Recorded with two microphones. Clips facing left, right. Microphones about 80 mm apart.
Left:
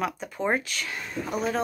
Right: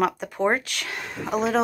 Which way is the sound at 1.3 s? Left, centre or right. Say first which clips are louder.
Right 6 dB; right.